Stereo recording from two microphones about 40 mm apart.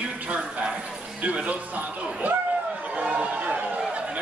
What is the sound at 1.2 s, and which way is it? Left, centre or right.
Speech, right.